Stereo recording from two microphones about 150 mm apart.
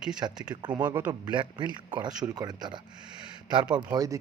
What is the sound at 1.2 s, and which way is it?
A man's voice, 30° right (ahead or behind).